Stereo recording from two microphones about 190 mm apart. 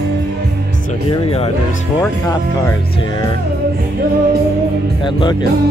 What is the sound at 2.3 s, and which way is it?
Speech, 15° left (ahead or behind).